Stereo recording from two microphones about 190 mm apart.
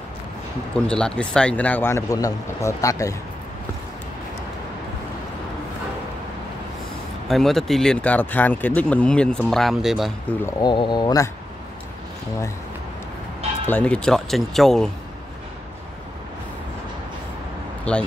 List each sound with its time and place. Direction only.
0.7 s speech: 5° left (ahead or behind)
7.2 s speech: centre (ahead or behind)
10.4 s speech: 25° left (ahead or behind)
13.7 s speech: 5° left (ahead or behind)
17.9 s speech: 5° left (ahead or behind)